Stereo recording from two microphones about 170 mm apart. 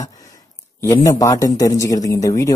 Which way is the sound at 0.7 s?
20° left (ahead or behind).